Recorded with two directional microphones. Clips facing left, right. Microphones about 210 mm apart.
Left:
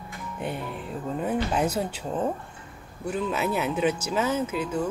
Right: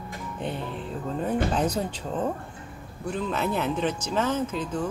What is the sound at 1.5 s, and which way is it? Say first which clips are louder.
Speech: even; 10° left (ahead or behind).